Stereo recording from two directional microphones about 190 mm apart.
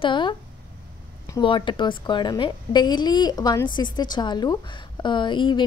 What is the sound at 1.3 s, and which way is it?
A woman's voice, 25° left (ahead or behind).